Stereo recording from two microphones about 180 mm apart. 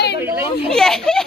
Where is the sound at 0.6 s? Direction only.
5° left (ahead or behind).